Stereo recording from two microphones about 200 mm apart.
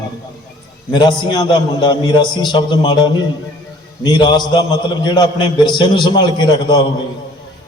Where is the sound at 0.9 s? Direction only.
20° left (ahead or behind).